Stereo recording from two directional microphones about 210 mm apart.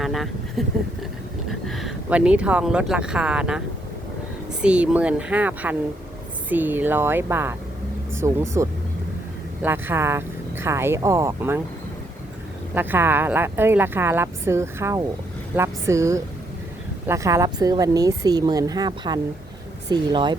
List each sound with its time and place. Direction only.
0.0 s a sound: centre (ahead or behind)
1.5 s speech: centre (ahead or behind)
4.6 s speech: 5° right (ahead or behind)
12.7 s speech: 10° right (ahead or behind)